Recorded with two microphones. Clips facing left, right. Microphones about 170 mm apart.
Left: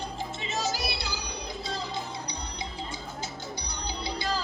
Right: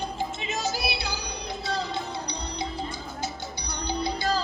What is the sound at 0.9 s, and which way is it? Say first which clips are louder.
Music: right 3 dB; 60° right (ahead or behind).